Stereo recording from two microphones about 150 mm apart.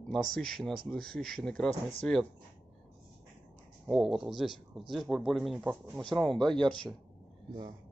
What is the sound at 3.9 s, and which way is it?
A man's voice, centre (ahead or behind).